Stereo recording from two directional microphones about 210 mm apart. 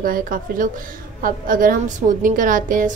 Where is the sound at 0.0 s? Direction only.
40° right (ahead or behind).